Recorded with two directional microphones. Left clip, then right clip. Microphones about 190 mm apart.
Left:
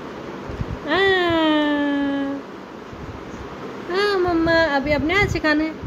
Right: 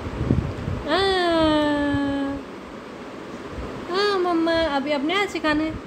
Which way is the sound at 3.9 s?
Centre (ahead or behind).